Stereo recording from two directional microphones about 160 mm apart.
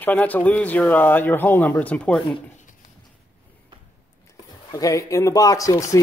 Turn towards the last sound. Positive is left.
turn(degrees=20)  # may be behind; listen again after turning